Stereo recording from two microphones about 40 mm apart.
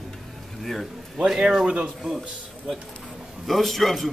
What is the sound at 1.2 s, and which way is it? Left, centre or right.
Speech, centre.